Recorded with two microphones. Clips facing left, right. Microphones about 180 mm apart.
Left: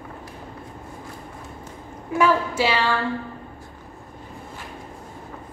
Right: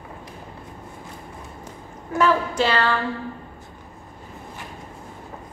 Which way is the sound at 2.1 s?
10° left (ahead or behind).